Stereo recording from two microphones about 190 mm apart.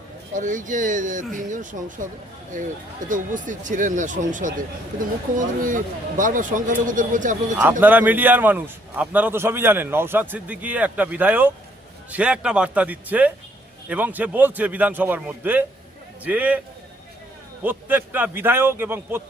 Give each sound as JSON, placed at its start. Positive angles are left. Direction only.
{"t": 0.3, "sound": "speech", "side_deg": -40}
{"t": 3.1, "sound": "speech", "side_deg": -45}
{"t": 7.6, "sound": "a man's voice", "side_deg": -10}
{"t": 17.6, "sound": "a man's voice", "side_deg": -10}